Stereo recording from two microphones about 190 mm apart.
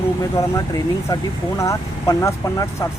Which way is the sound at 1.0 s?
15° left (ahead or behind).